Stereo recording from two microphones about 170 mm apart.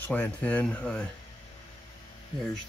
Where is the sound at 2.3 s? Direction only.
30° left (ahead or behind).